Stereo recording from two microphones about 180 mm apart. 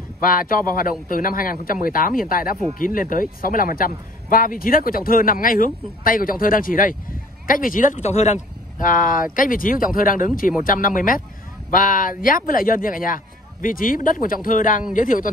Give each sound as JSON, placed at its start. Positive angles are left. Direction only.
{"t": 0.2, "sound": "speech", "side_deg": 50}